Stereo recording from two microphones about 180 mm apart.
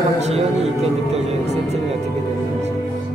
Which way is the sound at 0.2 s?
35° right (ahead or behind).